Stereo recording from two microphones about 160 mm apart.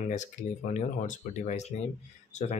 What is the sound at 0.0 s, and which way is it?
Speech, 50° left (ahead or behind).